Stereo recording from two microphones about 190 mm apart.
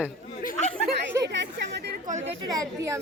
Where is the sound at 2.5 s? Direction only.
15° right (ahead or behind).